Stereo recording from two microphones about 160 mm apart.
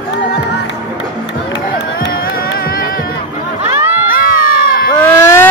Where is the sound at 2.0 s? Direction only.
65° left (ahead or behind).